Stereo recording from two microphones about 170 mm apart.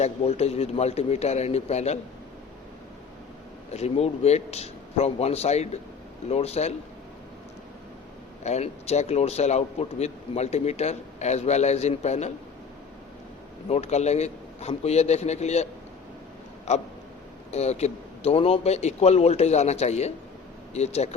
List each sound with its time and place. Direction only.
0.0 s speech: 40° left (ahead or behind)
3.7 s speech: 40° left (ahead or behind)
8.4 s speech: 40° left (ahead or behind)
13.7 s speech: 40° left (ahead or behind)
16.7 s speech: 40° left (ahead or behind)